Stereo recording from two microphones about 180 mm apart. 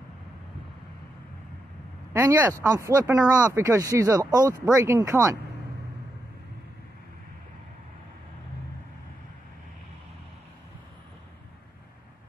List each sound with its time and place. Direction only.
2.1 s speech: 10° right (ahead or behind)